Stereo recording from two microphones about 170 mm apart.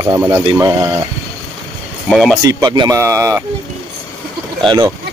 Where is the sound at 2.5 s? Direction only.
25° right (ahead or behind).